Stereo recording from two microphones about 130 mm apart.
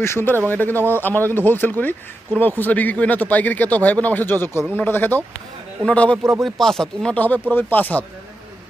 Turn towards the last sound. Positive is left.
turn(degrees=15)  # may be behind; listen again after turning